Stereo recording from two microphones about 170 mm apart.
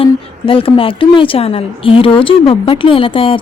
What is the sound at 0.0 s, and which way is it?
A woman's voice, 30° left (ahead or behind).